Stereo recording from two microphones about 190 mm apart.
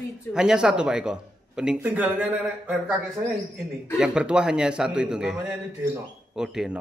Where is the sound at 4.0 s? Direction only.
5° right (ahead or behind).